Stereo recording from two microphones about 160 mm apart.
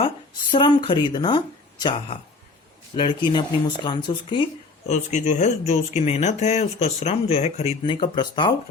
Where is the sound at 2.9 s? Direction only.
30° left (ahead or behind).